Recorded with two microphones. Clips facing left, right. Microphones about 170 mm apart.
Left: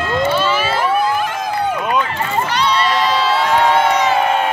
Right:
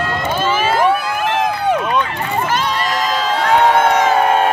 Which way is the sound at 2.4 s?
45° right (ahead or behind).